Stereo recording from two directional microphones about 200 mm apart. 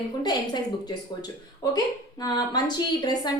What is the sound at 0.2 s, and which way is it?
Speech, 20° left (ahead or behind).